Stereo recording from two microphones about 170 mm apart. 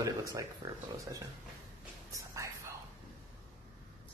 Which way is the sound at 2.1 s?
20° right (ahead or behind).